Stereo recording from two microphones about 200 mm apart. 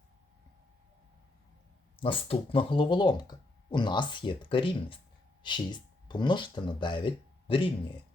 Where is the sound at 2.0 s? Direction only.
25° left (ahead or behind).